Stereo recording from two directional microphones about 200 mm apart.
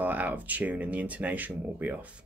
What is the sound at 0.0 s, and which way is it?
Speech, 10° right (ahead or behind).